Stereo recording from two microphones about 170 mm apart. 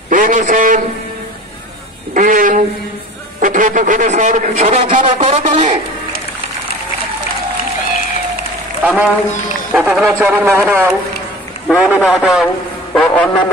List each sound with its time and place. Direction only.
0.1 s a man's voice: 50° right (ahead or behind)
2.1 s speech: 50° right (ahead or behind)
8.8 s a man's voice: 10° right (ahead or behind)